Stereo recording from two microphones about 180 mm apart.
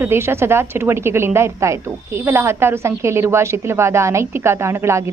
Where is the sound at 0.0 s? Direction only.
15° right (ahead or behind).